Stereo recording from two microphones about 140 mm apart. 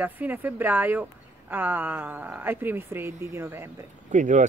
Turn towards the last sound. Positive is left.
turn(degrees=-60)  # may be behind; listen again after turning